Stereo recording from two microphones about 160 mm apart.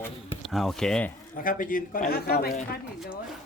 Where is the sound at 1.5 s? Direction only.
60° left (ahead or behind).